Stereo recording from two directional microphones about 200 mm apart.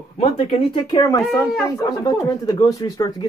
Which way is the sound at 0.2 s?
30° left (ahead or behind).